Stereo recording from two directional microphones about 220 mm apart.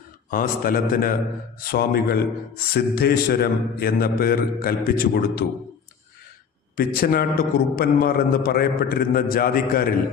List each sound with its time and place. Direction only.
0.3 s a man's voice: 40° left (ahead or behind)
6.7 s a man's voice: 40° left (ahead or behind)